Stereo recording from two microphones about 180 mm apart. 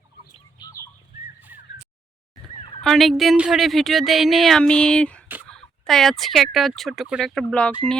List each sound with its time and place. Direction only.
0.6 s fowl: 15° left (ahead or behind)
2.8 s speech: centre (ahead or behind)